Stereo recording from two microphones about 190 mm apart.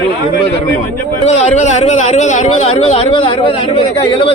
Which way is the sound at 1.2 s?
35° left (ahead or behind).